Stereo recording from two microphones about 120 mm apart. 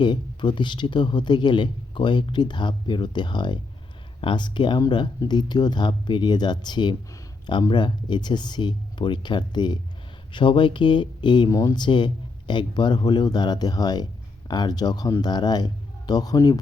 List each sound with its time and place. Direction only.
0.0 s speech: 40° left (ahead or behind)